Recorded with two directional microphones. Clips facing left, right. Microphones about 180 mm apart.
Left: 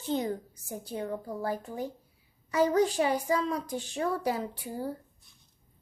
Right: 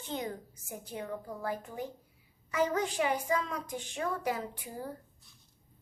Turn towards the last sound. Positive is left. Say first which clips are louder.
# left 5 dB
turn(degrees=30)  # may be behind; listen again after turning